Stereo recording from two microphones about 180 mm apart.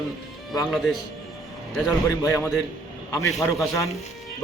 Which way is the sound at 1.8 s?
15° left (ahead or behind).